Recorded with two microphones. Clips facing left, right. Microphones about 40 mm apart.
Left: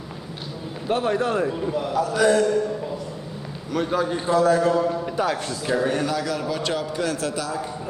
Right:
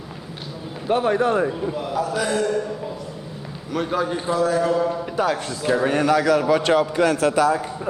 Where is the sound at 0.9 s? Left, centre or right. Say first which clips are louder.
Right 3 dB; right.